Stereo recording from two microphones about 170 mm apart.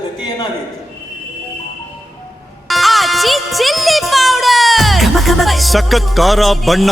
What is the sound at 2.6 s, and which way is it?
Music, centre (ahead or behind).